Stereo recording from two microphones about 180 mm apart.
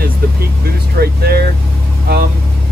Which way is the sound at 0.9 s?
60° right (ahead or behind).